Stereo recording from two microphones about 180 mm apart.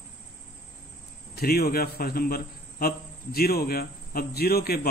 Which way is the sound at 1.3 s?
60° left (ahead or behind).